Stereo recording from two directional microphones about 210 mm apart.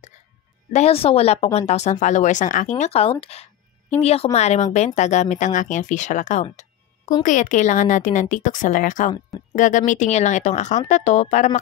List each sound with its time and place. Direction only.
0.7 s a woman's voice: 30° left (ahead or behind)